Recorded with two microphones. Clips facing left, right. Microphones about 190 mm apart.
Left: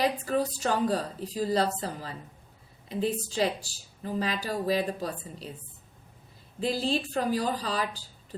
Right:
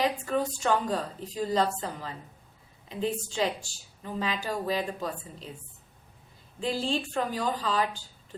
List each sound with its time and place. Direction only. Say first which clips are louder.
0.0 s speech: left 1 dB; 35° left (ahead or behind)
6.6 s speech: left 1 dB; 40° left (ahead or behind)